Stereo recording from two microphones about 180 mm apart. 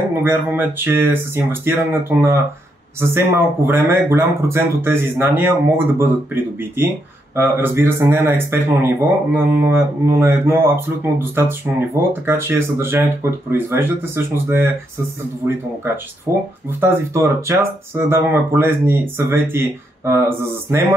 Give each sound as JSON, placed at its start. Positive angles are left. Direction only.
{"t": 0.2, "sound": "speech", "side_deg": -10}